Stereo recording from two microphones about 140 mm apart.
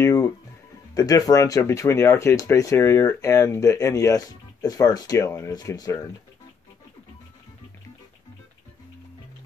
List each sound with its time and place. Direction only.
0.0 s music: 25° left (ahead or behind)
0.9 s speech: 25° left (ahead or behind)